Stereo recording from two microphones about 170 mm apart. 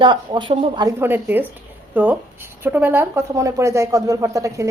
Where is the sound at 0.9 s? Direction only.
15° right (ahead or behind).